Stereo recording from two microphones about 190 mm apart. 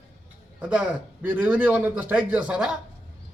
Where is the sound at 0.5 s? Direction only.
5° right (ahead or behind).